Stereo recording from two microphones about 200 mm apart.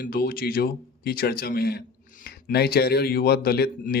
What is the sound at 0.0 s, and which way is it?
Speech, 50° left (ahead or behind).